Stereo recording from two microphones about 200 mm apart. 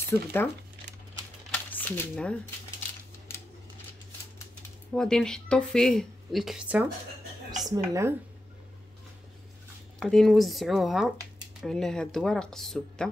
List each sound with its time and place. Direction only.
0.1 s speech: 10° left (ahead or behind)
1.5 s a sound: 10° left (ahead or behind)
4.9 s speech: 5° left (ahead or behind)
7.7 s speech: 15° right (ahead or behind)
9.9 s speech: centre (ahead or behind)